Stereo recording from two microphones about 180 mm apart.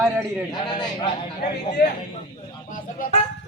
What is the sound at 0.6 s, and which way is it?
Speech, 25° left (ahead or behind).